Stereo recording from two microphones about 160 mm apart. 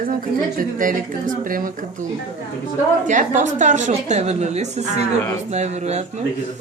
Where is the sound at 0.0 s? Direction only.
60° right (ahead or behind).